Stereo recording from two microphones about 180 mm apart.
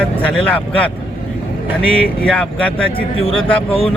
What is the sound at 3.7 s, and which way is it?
Speech, 30° left (ahead or behind).